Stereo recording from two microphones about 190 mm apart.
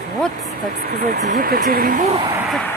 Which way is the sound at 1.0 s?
45° right (ahead or behind).